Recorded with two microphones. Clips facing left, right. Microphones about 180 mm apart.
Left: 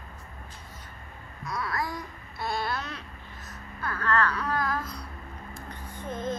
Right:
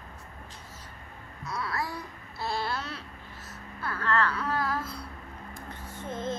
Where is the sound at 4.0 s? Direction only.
25° right (ahead or behind).